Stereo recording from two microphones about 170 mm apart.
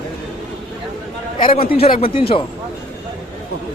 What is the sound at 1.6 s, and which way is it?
Speech, 35° left (ahead or behind).